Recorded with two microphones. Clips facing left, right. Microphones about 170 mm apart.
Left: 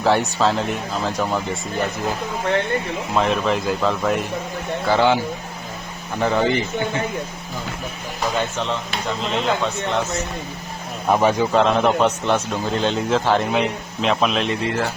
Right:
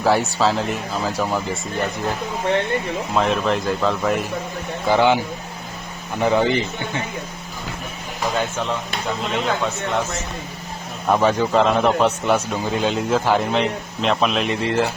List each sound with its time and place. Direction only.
0.0 s a man's voice: 10° right (ahead or behind)
3.2 s a man's voice: centre (ahead or behind)
4.9 s speech: 15° right (ahead or behind)
8.4 s speech: 10° right (ahead or behind)
11.1 s a man's voice: 15° left (ahead or behind)
11.5 s a man's voice: centre (ahead or behind)